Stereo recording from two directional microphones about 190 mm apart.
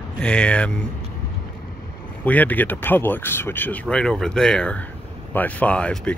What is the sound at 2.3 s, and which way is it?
Speech, 10° left (ahead or behind).